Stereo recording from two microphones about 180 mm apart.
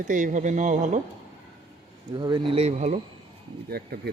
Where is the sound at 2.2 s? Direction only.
25° right (ahead or behind); by 3.0 s 40° right (ahead or behind).